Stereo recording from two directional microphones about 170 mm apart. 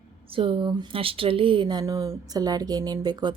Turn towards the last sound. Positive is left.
turn(degrees=-25)  # may be behind; listen again after turning